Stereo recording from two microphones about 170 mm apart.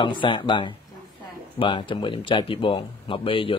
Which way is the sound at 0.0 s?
30° left (ahead or behind).